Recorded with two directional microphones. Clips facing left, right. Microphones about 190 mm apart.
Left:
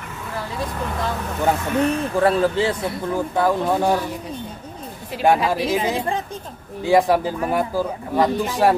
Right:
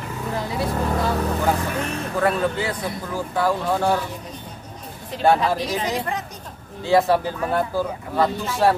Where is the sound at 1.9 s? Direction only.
30° left (ahead or behind).